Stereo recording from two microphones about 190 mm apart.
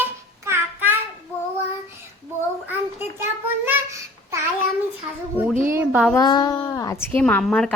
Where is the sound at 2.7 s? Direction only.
10° right (ahead or behind).